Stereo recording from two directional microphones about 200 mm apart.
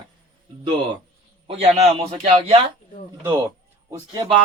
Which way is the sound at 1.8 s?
30° right (ahead or behind).